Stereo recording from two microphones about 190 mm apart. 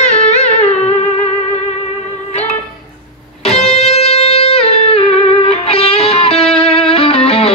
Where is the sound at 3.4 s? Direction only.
35° left (ahead or behind).